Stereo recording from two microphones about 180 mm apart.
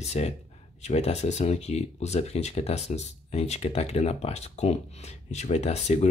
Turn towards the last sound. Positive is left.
turn(degrees=40)  # may be behind; listen again after turning